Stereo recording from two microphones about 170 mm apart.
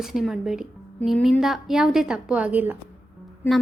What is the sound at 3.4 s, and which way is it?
Music, 15° left (ahead or behind).